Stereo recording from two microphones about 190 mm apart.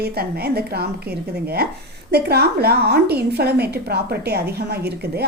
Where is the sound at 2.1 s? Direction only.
55° right (ahead or behind).